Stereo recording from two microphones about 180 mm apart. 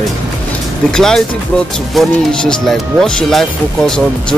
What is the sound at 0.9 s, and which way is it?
Speech, 5° left (ahead or behind).